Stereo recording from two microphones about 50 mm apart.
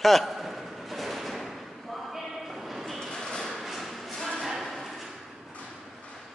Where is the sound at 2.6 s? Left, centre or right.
Centre.